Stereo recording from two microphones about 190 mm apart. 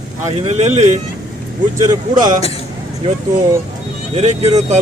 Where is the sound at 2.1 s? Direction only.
20° right (ahead or behind).